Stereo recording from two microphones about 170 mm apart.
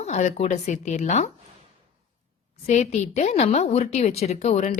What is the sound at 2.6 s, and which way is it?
A woman's voice, 45° left (ahead or behind).